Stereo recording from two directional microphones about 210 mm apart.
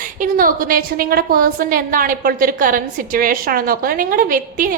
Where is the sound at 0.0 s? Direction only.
40° right (ahead or behind).